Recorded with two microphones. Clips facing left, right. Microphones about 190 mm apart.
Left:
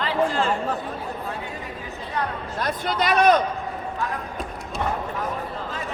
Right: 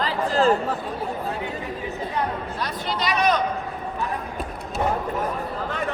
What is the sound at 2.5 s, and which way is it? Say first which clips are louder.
Speech: left 3 dB; 50° left (ahead or behind).